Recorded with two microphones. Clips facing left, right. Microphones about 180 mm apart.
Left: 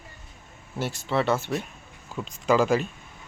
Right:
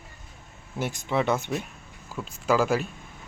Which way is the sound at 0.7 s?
15° right (ahead or behind).